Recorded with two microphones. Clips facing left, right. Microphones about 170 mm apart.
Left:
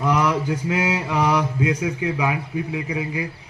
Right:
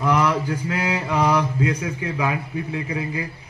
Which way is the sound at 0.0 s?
20° left (ahead or behind).